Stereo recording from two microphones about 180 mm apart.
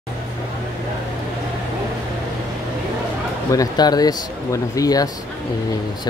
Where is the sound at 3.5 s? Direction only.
20° left (ahead or behind).